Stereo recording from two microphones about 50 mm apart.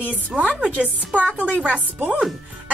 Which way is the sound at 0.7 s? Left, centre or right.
Right.